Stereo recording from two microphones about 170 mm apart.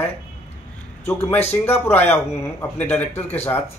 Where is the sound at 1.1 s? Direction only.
15° left (ahead or behind).